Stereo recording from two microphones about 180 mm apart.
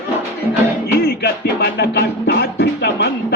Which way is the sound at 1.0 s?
65° left (ahead or behind).